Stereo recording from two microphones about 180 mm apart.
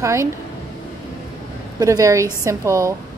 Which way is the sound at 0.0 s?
15° right (ahead or behind).